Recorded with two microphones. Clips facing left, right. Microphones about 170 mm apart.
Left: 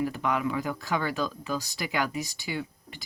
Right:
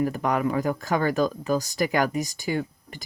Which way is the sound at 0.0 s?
45° right (ahead or behind).